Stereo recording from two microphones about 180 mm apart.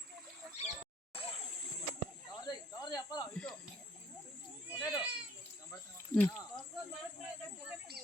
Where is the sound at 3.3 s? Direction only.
5° left (ahead or behind).